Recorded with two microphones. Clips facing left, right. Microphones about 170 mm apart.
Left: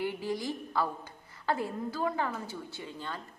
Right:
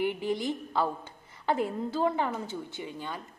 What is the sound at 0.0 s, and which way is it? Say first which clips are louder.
A woman's voice: right 4 dB; 20° right (ahead or behind).